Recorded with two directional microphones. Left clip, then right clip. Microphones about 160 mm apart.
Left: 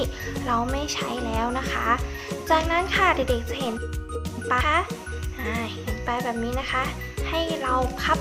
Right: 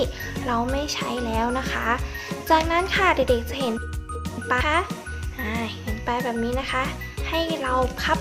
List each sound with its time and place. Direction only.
0.4 s a child's voice: 15° right (ahead or behind)